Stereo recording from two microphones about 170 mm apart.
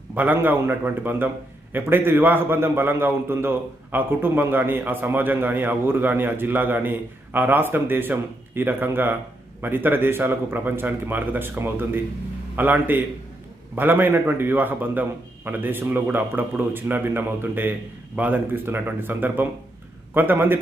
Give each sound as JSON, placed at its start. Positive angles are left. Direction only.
{"t": 0.1, "sound": "a man's voice", "side_deg": -10}